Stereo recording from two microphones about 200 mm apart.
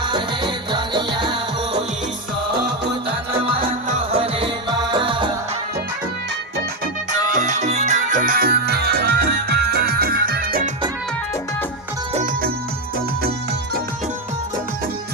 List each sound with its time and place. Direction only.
0.1 s music: 25° right (ahead or behind)
4.1 s music: 30° right (ahead or behind)
7.1 s music: 35° right (ahead or behind)
12.1 s music: 40° right (ahead or behind)